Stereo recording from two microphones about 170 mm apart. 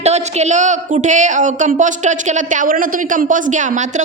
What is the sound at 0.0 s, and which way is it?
A woman's voice, 40° right (ahead or behind).